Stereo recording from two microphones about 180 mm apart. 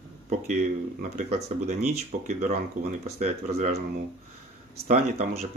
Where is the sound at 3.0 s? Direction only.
40° right (ahead or behind).